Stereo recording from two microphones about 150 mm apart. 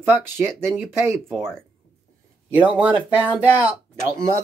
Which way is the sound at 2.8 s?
10° right (ahead or behind).